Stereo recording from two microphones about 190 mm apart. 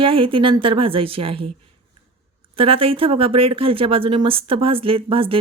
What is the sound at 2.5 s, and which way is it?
Speech, 30° right (ahead or behind).